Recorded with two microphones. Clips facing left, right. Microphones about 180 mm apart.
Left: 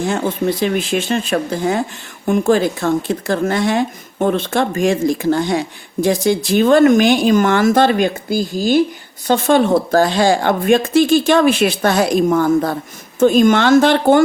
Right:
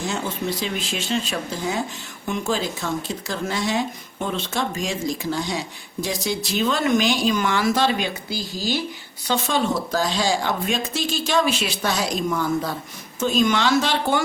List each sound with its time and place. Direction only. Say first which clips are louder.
0.0 s speech: left 8 dB; 55° left (ahead or behind)